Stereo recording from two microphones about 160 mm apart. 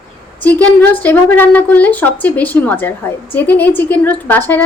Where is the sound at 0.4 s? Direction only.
10° left (ahead or behind).